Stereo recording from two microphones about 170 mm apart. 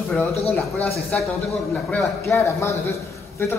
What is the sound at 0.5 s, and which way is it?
A woman's voice, 10° left (ahead or behind).